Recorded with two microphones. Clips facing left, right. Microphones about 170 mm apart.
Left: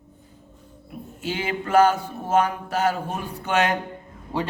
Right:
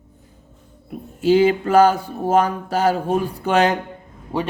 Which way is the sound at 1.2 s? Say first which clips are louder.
Right 13 dB; 35° right (ahead or behind).